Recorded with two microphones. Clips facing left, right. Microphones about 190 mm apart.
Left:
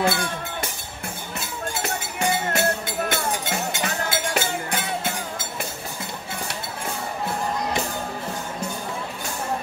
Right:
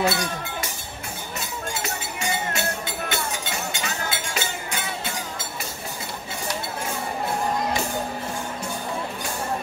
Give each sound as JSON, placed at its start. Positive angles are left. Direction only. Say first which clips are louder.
{"t": 0.0, "sound": "chink", "louder": "left 1 dB", "side_deg": 55}
{"t": 1.8, "sound": "music", "louder": "left 4 dB", "side_deg": 55}